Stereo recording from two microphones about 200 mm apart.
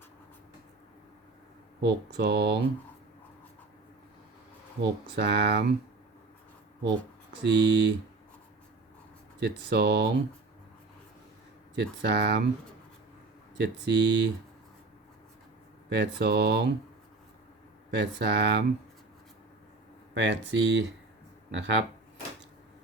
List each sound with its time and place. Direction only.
1.8 s speech: 55° right (ahead or behind)
4.8 s speech: 55° right (ahead or behind)
7.4 s speech: 60° right (ahead or behind)
9.4 s speech: 55° right (ahead or behind)
11.8 s speech: 55° right (ahead or behind)
13.6 s speech: 55° right (ahead or behind)
15.9 s speech: 55° right (ahead or behind)
17.9 s speech: 55° right (ahead or behind)
20.1 s speech: 65° right (ahead or behind)